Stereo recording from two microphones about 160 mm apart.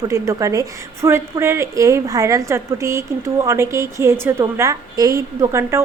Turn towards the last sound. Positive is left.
turn(degrees=-15)  # may be behind; listen again after turning